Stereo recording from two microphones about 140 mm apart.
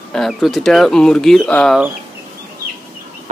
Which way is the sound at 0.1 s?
Centre (ahead or behind).